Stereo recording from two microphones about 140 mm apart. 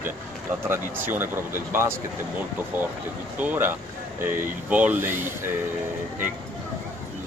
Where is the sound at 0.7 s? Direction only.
15° right (ahead or behind).